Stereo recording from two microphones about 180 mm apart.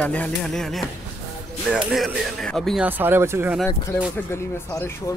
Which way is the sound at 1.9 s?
Centre (ahead or behind).